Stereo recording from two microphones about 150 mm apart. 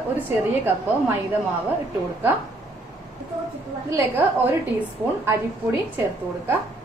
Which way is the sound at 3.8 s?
20° right (ahead or behind).